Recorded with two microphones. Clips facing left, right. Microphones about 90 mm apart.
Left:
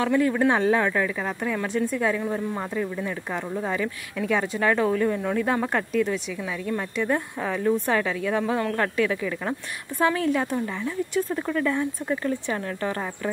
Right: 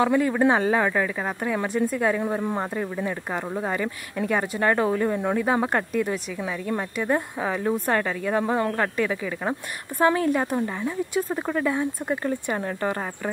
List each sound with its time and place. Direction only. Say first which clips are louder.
0.0 s a woman's voice: right 1 dB; 15° right (ahead or behind)